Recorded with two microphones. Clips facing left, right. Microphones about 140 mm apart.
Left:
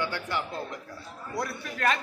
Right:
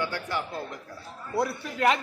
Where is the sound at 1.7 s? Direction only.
20° right (ahead or behind).